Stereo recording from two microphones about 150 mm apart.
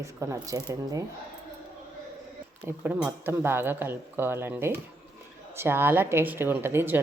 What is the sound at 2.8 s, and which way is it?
Speech, 15° right (ahead or behind).